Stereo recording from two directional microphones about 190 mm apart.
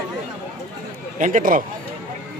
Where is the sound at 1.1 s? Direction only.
40° right (ahead or behind).